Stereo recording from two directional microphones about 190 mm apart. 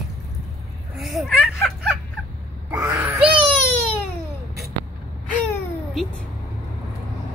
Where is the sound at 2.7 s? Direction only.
15° right (ahead or behind).